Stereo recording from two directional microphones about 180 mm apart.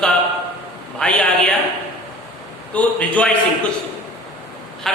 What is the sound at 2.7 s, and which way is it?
Speech, 10° left (ahead or behind).